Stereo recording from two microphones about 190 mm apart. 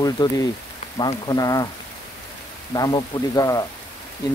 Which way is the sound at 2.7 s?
20° left (ahead or behind).